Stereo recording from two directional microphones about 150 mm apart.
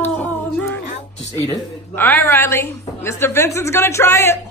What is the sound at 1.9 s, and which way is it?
A woman's voice, 15° left (ahead or behind).